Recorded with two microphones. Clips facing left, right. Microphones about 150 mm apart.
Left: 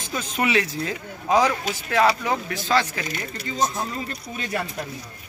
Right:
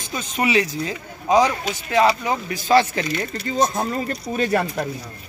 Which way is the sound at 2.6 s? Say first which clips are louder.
Right 7 dB; 20° right (ahead or behind).